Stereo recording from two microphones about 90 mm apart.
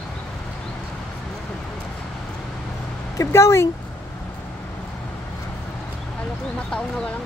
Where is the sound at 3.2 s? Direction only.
30° left (ahead or behind).